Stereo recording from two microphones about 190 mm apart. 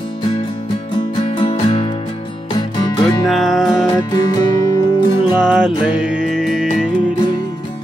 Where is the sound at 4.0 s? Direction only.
20° left (ahead or behind).